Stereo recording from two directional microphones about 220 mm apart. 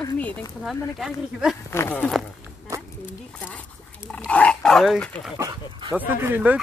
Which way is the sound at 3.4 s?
5° left (ahead or behind).